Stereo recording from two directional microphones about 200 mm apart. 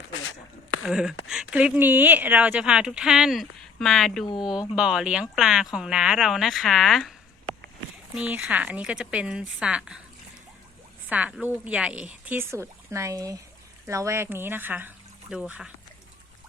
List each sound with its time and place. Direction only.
0.2 s a sound: 90° left
0.8 s speech: 5° right (ahead or behind)
11.1 s speech: 5° right (ahead or behind)